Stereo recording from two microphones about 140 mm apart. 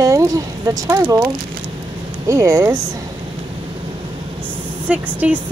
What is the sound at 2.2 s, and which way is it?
Speech, 20° right (ahead or behind).